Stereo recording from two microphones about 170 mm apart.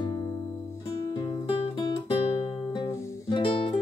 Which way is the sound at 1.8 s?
25° left (ahead or behind).